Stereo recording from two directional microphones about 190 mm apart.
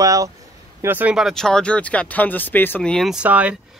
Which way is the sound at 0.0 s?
20° right (ahead or behind).